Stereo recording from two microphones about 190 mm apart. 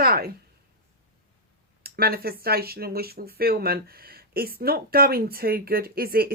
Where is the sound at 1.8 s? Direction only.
55° right (ahead or behind).